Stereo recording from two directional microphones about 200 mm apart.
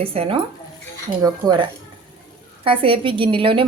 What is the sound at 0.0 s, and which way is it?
A woman's voice, 30° right (ahead or behind).